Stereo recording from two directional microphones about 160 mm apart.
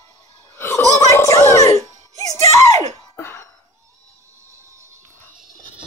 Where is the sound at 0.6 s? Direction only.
15° left (ahead or behind).